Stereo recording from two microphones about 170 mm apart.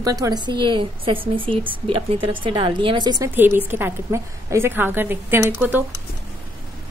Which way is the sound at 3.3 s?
10° right (ahead or behind).